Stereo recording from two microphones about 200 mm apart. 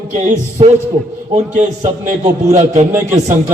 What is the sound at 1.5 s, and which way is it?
A man's voice, 35° right (ahead or behind).